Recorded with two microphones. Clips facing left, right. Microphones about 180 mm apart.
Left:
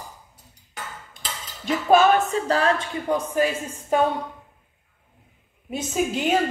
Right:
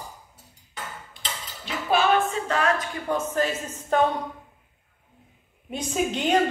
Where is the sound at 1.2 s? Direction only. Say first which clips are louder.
Left 7 dB; 45° left (ahead or behind).